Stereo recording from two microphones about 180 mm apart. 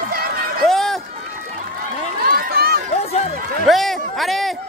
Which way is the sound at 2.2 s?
55° right (ahead or behind).